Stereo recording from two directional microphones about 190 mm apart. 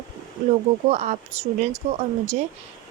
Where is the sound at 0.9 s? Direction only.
35° right (ahead or behind).